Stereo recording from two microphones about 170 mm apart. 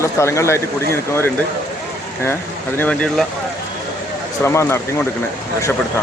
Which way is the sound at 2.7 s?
5° left (ahead or behind).